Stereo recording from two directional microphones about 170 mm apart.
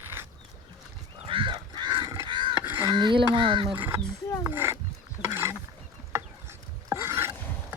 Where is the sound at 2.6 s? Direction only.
15° right (ahead or behind).